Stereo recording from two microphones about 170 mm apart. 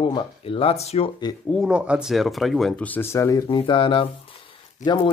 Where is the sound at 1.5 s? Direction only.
5° right (ahead or behind).